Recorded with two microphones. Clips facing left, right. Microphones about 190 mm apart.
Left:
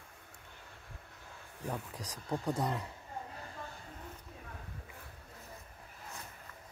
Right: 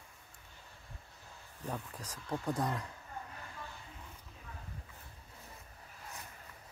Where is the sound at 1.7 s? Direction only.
15° left (ahead or behind).